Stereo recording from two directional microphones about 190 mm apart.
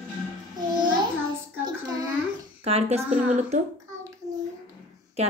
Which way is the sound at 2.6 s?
30° right (ahead or behind).